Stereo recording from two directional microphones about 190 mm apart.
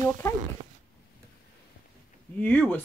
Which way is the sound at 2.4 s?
10° left (ahead or behind).